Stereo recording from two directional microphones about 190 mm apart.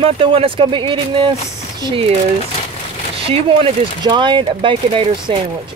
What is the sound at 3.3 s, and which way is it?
Speech, 30° right (ahead or behind).